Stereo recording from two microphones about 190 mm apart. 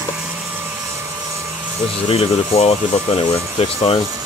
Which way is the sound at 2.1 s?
30° left (ahead or behind).